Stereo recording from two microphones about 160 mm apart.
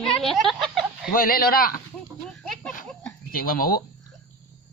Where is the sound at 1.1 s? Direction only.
65° left (ahead or behind).